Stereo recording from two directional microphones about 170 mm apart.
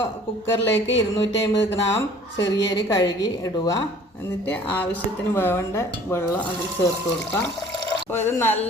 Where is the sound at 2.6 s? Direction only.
25° left (ahead or behind).